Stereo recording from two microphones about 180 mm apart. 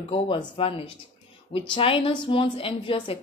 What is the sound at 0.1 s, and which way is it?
Speech, 30° left (ahead or behind).